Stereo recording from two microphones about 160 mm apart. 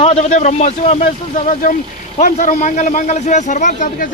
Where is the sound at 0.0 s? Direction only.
40° left (ahead or behind).